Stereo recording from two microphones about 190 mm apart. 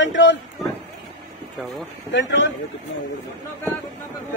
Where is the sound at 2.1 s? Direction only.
70° left (ahead or behind).